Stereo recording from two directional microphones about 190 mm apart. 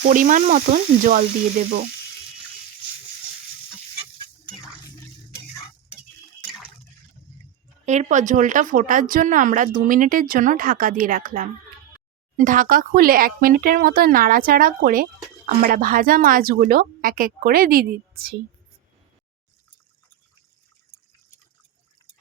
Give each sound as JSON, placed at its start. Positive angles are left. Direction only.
{"t": 0.0, "sound": "speech", "side_deg": -45}
{"t": 7.9, "sound": "speech", "side_deg": -40}